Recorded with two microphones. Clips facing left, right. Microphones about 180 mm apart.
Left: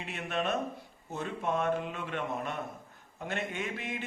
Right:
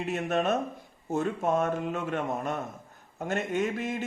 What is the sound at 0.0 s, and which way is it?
A man's voice, 45° right (ahead or behind).